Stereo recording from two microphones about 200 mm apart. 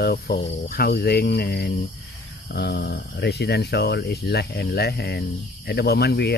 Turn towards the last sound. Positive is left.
turn(degrees=55)  # may be behind; listen again after turning